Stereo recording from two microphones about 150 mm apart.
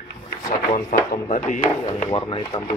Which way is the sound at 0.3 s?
65° left (ahead or behind).